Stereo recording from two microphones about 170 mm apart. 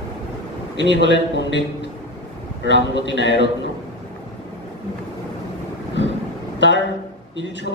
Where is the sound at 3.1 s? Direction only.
90° left.